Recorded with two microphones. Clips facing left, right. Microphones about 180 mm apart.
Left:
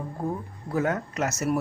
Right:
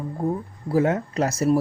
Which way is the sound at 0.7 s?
25° right (ahead or behind).